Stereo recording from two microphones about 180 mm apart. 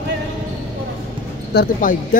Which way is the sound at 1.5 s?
55° left (ahead or behind).